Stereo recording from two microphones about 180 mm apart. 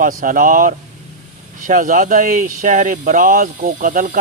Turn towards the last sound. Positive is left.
turn(degrees=-50)  # may be behind; listen again after turning